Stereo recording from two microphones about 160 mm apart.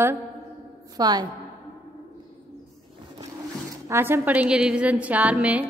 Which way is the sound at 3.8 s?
15° right (ahead or behind).